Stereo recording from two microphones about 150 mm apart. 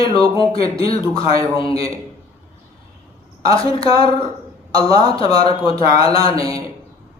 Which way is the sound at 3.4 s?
40° left (ahead or behind).